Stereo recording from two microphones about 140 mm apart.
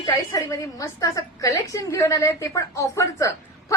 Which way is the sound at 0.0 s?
25° left (ahead or behind).